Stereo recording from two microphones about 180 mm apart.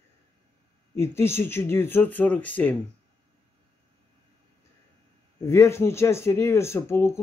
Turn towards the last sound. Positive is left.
turn(degrees=15)  # may be behind; listen again after turning